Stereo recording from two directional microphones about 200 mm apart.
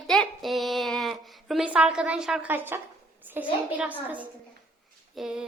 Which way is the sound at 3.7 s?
10° right (ahead or behind).